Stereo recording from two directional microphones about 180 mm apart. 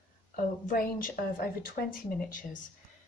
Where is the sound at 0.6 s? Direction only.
50° left (ahead or behind).